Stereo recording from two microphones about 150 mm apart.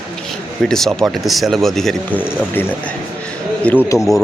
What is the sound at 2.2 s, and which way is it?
Speech, 10° left (ahead or behind).